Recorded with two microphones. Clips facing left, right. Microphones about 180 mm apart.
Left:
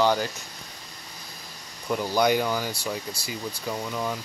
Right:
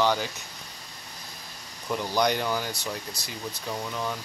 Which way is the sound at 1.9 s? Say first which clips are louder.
Left 3 dB; 5° left (ahead or behind).